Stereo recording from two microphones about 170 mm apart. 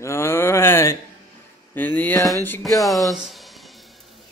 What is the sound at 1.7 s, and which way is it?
Speech, 10° left (ahead or behind).